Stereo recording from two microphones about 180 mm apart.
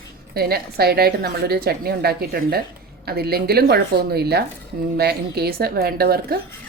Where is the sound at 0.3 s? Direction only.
60° right (ahead or behind).